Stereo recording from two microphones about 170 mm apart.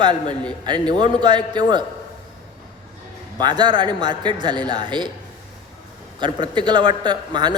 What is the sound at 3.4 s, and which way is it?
A man's voice, 25° right (ahead or behind).